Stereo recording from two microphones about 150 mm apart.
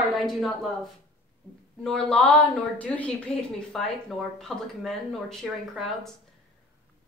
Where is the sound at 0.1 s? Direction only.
Centre (ahead or behind).